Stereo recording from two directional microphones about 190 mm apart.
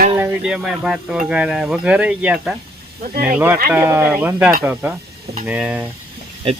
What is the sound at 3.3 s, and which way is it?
Speech, 10° right (ahead or behind).